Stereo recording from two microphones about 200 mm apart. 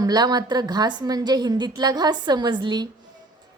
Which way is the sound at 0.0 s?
20° right (ahead or behind).